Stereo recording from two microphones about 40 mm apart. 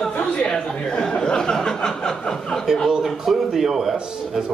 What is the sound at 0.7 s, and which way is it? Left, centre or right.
Speech, left.